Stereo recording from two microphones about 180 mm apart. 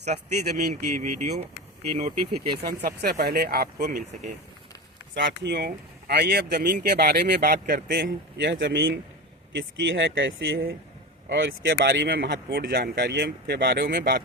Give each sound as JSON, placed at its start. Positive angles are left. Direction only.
{"t": 0.0, "sound": "speech", "side_deg": -40}
{"t": 2.0, "sound": "speech", "side_deg": -25}
{"t": 2.6, "sound": "speech", "side_deg": -60}
{"t": 5.1, "sound": "speech", "side_deg": -75}
{"t": 7.9, "sound": "speech", "side_deg": -65}
{"t": 9.6, "sound": "speech", "side_deg": -90}
{"t": 11.6, "sound": "speech", "side_deg": -70}